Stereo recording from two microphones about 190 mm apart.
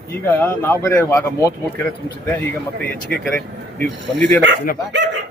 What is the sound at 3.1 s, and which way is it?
Speech, 50° right (ahead or behind).